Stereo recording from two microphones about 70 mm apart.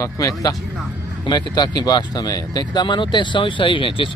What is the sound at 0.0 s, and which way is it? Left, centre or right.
Speech, left.